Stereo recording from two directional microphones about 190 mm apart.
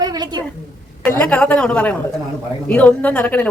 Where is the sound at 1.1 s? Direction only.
5° left (ahead or behind).